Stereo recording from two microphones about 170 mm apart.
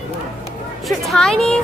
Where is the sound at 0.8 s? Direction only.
Centre (ahead or behind).